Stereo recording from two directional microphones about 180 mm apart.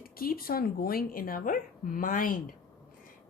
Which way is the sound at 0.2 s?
55° left (ahead or behind).